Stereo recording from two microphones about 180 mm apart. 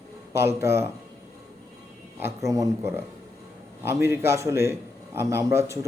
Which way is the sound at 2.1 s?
15° right (ahead or behind).